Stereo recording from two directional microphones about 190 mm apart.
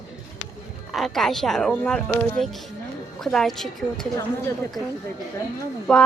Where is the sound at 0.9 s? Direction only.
Centre (ahead or behind).